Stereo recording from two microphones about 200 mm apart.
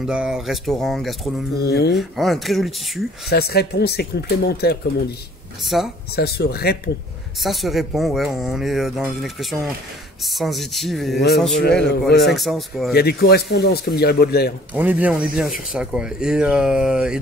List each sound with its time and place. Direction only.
0.0 s speech: 5° right (ahead or behind)
1.7 s a man's voice: 55° left (ahead or behind)
2.0 s speech: centre (ahead or behind)
3.3 s speech: 50° left (ahead or behind)
5.6 s speech: centre (ahead or behind)
6.1 s speech: 50° left (ahead or behind)
7.3 s speech: centre (ahead or behind)
11.5 s a man's voice: 55° left (ahead or behind)
12.4 s speech: centre (ahead or behind)
12.9 s speech: 50° left (ahead or behind)
14.7 s speech: 10° right (ahead or behind)